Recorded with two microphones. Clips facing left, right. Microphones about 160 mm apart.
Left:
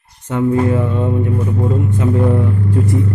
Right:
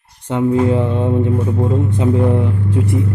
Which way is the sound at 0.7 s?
20° right (ahead or behind).